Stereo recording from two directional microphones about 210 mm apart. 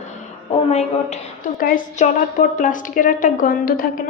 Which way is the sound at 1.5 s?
45° left (ahead or behind).